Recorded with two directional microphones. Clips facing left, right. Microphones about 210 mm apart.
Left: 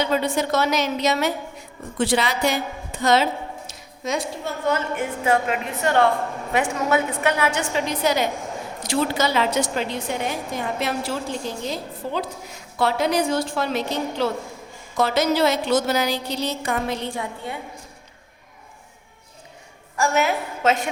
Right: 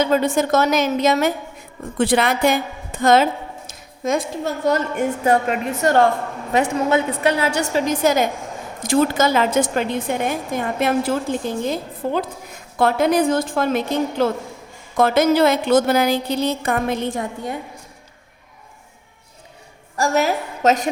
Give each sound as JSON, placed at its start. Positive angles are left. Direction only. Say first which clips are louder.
{"t": 0.0, "sound": "a woman's voice", "louder": "right 4 dB", "side_deg": -45}
{"t": 6.9, "sound": "a woman's voice", "louder": "right 1 dB", "side_deg": -30}
{"t": 20.0, "sound": "a woman's voice", "louder": "right 2 dB", "side_deg": -40}